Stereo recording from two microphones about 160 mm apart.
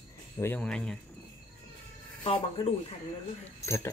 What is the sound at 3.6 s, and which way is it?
Speech, 15° left (ahead or behind).